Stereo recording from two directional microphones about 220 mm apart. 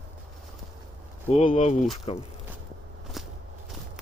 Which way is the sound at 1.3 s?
30° left (ahead or behind).